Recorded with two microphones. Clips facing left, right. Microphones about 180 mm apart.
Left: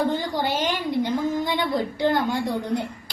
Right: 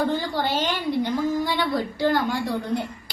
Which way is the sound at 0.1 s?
20° left (ahead or behind).